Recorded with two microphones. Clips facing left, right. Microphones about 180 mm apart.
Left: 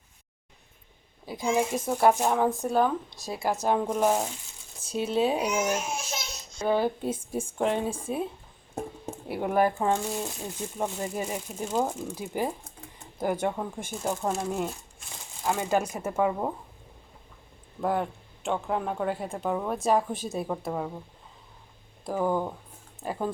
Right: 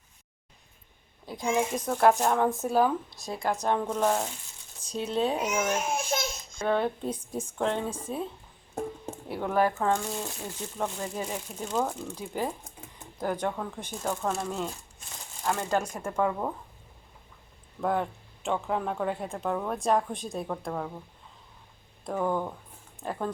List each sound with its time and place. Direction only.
1.3 s speech: 5° left (ahead or behind)
5.9 s babbling: 55° right (ahead or behind)
6.6 s speech: 5° left (ahead or behind)
15.4 s speech: 10° left (ahead or behind)
17.7 s speech: 5° left (ahead or behind)
22.0 s speech: 5° left (ahead or behind)